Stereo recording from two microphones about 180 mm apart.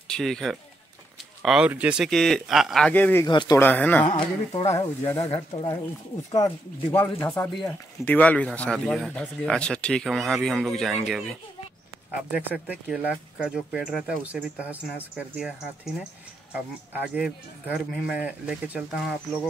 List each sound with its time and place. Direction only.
0.1 s speech: centre (ahead or behind)
3.3 s speech: 25° left (ahead or behind)
3.6 s speech: 10° left (ahead or behind)
4.0 s speech: 25° left (ahead or behind)
5.0 s speech: 20° left (ahead or behind)
5.3 s speech: 30° left (ahead or behind)
6.3 s speech: 15° left (ahead or behind); by 19.1 s 5° right (ahead or behind)